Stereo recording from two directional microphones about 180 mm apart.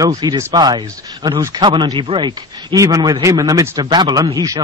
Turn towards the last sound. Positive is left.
turn(degrees=-20)  # may be behind; listen again after turning